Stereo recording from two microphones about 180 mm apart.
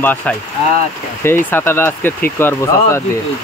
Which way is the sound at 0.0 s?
10° left (ahead or behind).